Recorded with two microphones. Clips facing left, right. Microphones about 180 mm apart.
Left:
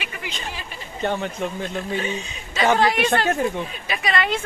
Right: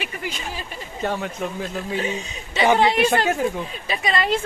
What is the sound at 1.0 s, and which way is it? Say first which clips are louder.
A man's voice: left 1 dB; 5° right (ahead or behind).